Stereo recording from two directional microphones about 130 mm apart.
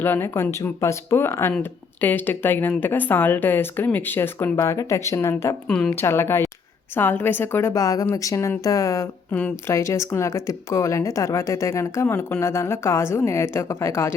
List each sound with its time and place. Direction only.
0.0 s speech: 15° left (ahead or behind)
5.6 s a woman's voice: 5° left (ahead or behind)
6.0 s speech: 20° left (ahead or behind)